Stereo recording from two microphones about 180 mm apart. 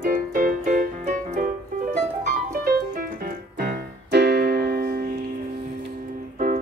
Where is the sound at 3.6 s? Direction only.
65° right (ahead or behind).